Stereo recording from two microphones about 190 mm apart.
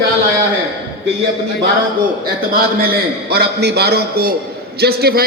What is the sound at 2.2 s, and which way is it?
A man's voice, 50° right (ahead or behind).